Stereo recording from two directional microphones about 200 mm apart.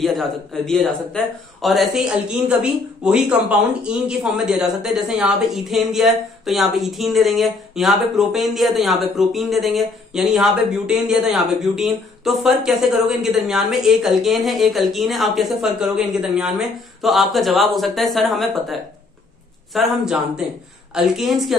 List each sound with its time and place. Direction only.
0.0 s speech: centre (ahead or behind)